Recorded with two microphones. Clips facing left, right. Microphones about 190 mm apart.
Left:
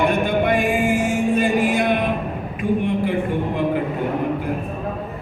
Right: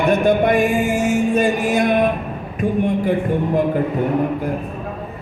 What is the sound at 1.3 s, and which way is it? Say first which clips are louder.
Music: right 1 dB; 45° right (ahead or behind).